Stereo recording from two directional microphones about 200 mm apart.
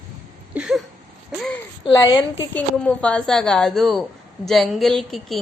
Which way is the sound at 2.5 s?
5° left (ahead or behind).